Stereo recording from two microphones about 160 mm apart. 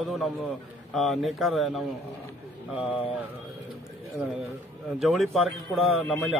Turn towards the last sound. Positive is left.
turn(degrees=0)  # may be behind; listen again after turning